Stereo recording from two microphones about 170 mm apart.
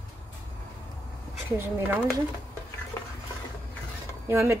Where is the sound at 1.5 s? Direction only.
15° right (ahead or behind).